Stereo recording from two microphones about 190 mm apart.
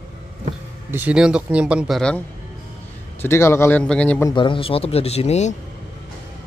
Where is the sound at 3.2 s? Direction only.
15° left (ahead or behind).